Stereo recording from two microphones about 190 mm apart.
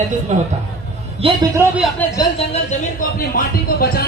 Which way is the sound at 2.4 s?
45° left (ahead or behind).